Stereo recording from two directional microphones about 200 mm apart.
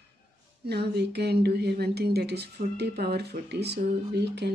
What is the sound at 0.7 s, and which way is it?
Speech, 55° right (ahead or behind).